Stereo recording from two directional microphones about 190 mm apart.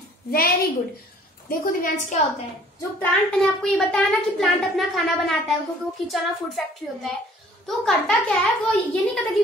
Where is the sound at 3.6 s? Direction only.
5° left (ahead or behind).